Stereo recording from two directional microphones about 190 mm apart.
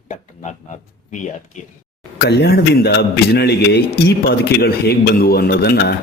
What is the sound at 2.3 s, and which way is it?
A man's voice, 60° left (ahead or behind).